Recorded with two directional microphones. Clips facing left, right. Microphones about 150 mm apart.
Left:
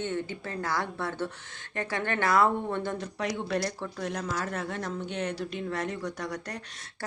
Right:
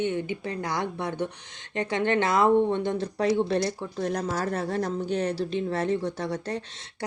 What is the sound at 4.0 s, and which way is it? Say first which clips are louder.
Speech: right 5 dB; 35° right (ahead or behind).